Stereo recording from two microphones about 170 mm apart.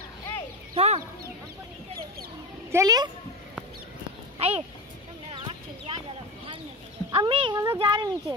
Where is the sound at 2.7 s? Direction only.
20° right (ahead or behind).